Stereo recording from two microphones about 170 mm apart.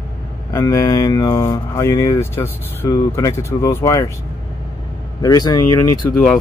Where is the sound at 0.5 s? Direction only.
15° left (ahead or behind).